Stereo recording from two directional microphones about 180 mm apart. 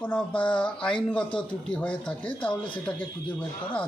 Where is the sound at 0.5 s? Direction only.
5° left (ahead or behind).